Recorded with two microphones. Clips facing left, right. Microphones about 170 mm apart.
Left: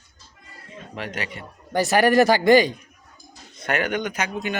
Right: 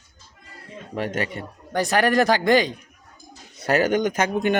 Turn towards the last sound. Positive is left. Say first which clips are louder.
# right 6 dB
turn(degrees=-50)  # may be behind; listen again after turning